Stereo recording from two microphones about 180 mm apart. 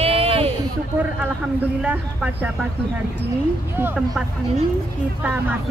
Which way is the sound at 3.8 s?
10° right (ahead or behind).